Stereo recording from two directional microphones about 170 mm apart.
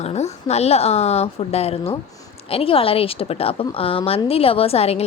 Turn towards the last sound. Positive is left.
turn(degrees=35)  # may be behind; listen again after turning